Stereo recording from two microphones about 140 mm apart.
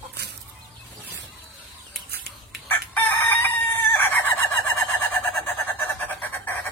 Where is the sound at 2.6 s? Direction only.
15° left (ahead or behind).